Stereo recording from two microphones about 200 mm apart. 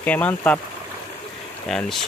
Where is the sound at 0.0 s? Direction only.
10° left (ahead or behind).